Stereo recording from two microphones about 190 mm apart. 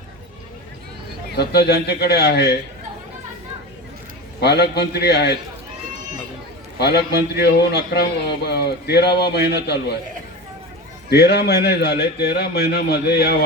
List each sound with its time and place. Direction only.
1.4 s a man's voice: 60° left (ahead or behind)
4.4 s a man's voice: 60° left (ahead or behind)
6.7 s a man's voice: 60° left (ahead or behind)
11.1 s a man's voice: 60° left (ahead or behind)